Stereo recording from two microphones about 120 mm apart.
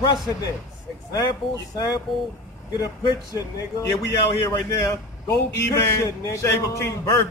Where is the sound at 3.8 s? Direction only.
25° left (ahead or behind).